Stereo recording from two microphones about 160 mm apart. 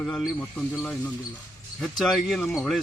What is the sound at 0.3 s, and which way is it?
A man's voice, 10° left (ahead or behind).